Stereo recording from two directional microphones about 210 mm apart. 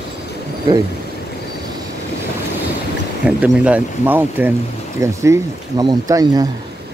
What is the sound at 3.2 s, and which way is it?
Speech, 5° right (ahead or behind).